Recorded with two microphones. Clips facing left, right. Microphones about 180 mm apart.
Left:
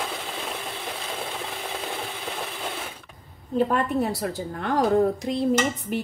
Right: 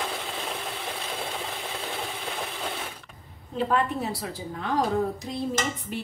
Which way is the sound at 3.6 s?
55° left (ahead or behind).